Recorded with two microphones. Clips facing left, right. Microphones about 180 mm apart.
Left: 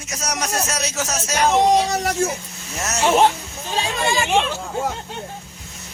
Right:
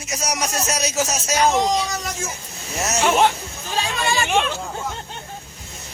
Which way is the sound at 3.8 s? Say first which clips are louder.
Left 1 dB; 20° left (ahead or behind).